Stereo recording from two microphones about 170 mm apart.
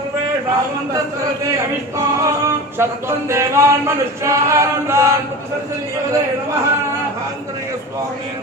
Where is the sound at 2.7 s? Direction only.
15° right (ahead or behind).